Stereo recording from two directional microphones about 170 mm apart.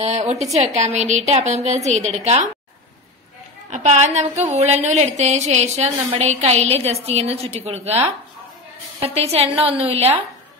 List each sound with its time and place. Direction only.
0.0 s a woman's voice: 40° right (ahead or behind)
3.7 s a woman's voice: 45° right (ahead or behind)
9.0 s a woman's voice: 35° right (ahead or behind)